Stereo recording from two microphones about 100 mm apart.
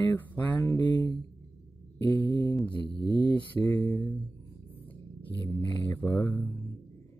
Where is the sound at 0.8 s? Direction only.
50° left (ahead or behind).